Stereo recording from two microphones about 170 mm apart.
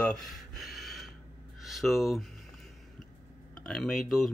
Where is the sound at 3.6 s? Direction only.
5° left (ahead or behind).